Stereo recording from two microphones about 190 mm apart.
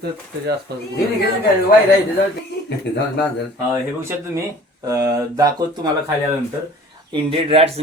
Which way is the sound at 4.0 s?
15° right (ahead or behind).